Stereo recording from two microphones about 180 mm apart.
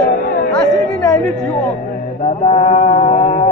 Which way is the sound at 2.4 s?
35° left (ahead or behind).